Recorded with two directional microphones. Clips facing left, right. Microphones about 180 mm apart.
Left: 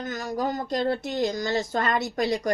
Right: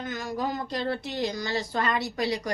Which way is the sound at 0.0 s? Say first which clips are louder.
Left 2 dB; 40° left (ahead or behind).